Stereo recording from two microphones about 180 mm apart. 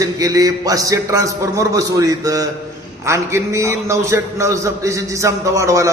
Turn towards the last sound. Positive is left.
turn(degrees=-15)  # may be behind; listen again after turning